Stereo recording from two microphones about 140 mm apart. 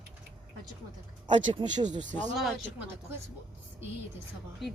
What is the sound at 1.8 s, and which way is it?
Speech, 60° right (ahead or behind).